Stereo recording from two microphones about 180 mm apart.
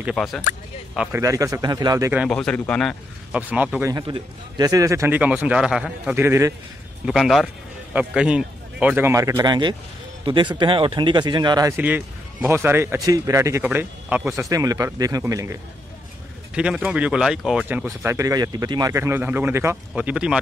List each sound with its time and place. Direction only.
0.0 s a man's voice: centre (ahead or behind)
1.1 s a man's voice: 15° right (ahead or behind)
2.2 s a man's voice: 5° left (ahead or behind)
3.3 s a man's voice: 10° right (ahead or behind)
3.9 s a man's voice: 20° right (ahead or behind)
7.1 s a man's voice: centre (ahead or behind); by 11.7 s 25° right (ahead or behind)
11.7 s a man's voice: 10° right (ahead or behind)
16.5 s a man's voice: 5° right (ahead or behind)